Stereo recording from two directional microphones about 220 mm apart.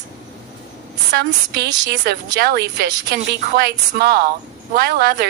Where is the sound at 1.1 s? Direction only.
45° right (ahead or behind).